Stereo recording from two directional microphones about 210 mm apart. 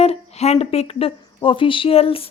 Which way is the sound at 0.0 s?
30° left (ahead or behind).